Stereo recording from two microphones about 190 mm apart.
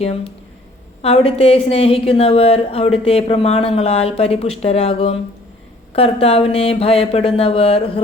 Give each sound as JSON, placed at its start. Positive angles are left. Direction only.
{"t": 0.0, "sound": "a woman's voice", "side_deg": 30}